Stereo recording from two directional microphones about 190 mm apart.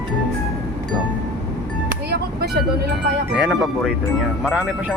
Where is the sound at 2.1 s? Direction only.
55° right (ahead or behind).